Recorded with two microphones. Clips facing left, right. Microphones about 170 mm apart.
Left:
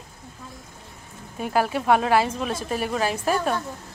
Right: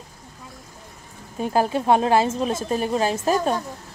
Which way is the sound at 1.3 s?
25° right (ahead or behind).